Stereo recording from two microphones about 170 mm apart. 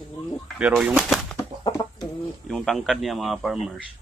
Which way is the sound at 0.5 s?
5° right (ahead or behind).